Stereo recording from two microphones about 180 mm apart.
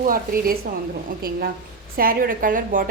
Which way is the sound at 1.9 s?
50° right (ahead or behind).